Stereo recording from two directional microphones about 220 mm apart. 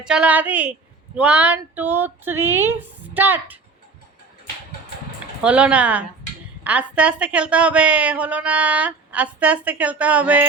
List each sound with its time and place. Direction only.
0.0 s a woman's voice: 5° right (ahead or behind)
5.4 s a woman's voice: 5° right (ahead or behind)